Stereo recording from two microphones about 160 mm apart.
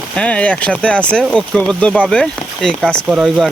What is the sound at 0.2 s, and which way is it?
Speech, 5° left (ahead or behind).